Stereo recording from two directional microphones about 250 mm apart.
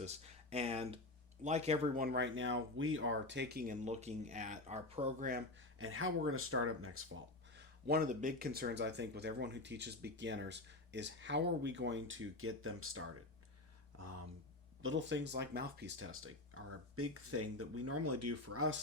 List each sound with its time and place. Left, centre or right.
0.0 s speech: right
5.8 s speech: right
7.5 s speech: right
14.0 s a sound: right
14.8 s speech: right